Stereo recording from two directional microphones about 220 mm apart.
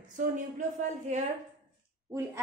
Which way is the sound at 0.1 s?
35° right (ahead or behind).